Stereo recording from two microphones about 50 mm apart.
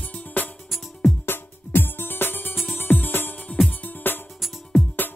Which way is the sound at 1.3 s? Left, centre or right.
Left.